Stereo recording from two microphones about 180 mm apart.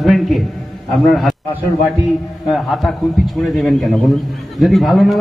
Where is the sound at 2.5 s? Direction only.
Centre (ahead or behind).